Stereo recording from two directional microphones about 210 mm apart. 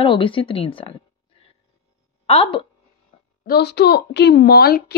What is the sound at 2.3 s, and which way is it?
Speech, 25° left (ahead or behind).